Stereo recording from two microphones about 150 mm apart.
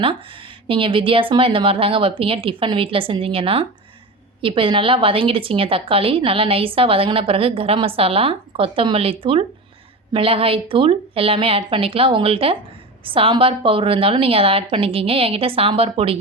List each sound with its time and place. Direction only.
0.7 s a woman's voice: 35° right (ahead or behind)